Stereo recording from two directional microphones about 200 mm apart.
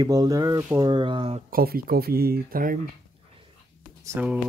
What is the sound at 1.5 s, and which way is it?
Speech, 45° right (ahead or behind).